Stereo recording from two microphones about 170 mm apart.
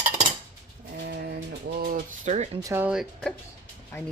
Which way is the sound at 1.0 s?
65° right (ahead or behind).